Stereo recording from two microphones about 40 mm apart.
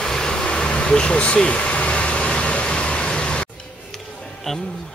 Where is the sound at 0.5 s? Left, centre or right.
Left.